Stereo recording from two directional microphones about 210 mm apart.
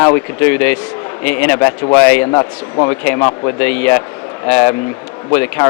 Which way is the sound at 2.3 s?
20° left (ahead or behind).